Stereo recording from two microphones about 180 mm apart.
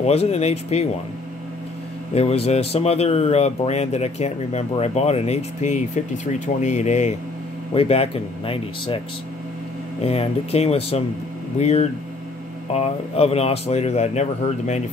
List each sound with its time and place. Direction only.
0.0 s speech: 35° left (ahead or behind)
2.1 s speech: 35° left (ahead or behind)
10.0 s speech: 35° left (ahead or behind)